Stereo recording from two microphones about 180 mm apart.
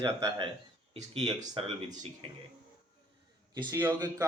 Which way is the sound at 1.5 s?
25° right (ahead or behind).